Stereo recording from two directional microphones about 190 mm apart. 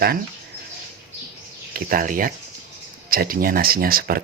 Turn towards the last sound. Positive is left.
turn(degrees=-50)  # may be behind; listen again after turning